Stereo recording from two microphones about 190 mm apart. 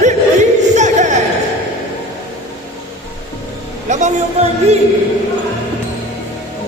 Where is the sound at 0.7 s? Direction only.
40° right (ahead or behind).